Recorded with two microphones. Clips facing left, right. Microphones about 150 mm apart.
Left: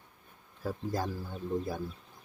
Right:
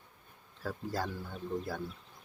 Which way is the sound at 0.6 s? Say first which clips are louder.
Left 3 dB; 15° left (ahead or behind).